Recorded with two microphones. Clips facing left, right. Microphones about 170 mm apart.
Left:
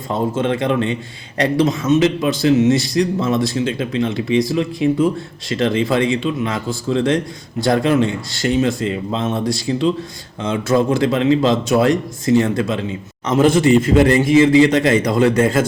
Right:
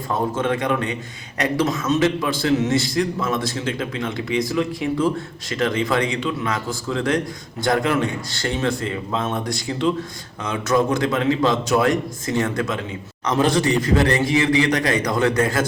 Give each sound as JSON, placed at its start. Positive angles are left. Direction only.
{"t": 0.1, "sound": "speech", "side_deg": 25}
{"t": 10.4, "sound": "speech", "side_deg": 25}